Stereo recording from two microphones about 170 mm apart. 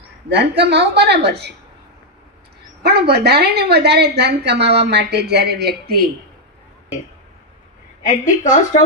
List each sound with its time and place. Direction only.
0.3 s a woman's voice: 90° right
2.8 s a woman's voice: 75° right (ahead or behind)
8.0 s a woman's voice: 50° left (ahead or behind)